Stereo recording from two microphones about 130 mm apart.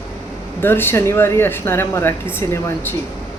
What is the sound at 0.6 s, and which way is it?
A woman's voice, 15° left (ahead or behind).